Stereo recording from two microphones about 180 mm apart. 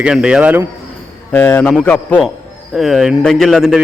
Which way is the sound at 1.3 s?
10° left (ahead or behind).